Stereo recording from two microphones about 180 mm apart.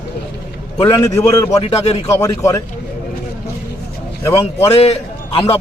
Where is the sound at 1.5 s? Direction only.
35° left (ahead or behind).